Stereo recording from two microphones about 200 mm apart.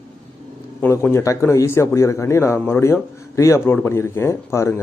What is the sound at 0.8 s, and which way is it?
A man's voice, 10° left (ahead or behind).